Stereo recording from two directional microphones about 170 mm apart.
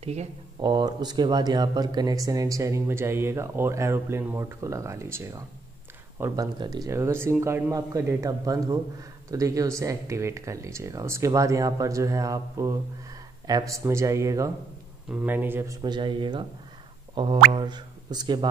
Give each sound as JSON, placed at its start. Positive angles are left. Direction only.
{"t": 0.0, "sound": "speech", "side_deg": -40}
{"t": 0.6, "sound": "speech", "side_deg": -25}
{"t": 17.1, "sound": "a sound", "side_deg": -30}
{"t": 17.5, "sound": "speech", "side_deg": -25}